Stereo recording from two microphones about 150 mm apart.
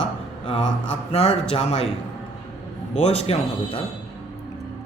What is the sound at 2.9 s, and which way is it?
Speech, 45° left (ahead or behind).